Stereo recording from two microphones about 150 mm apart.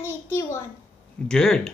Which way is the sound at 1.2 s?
5° left (ahead or behind).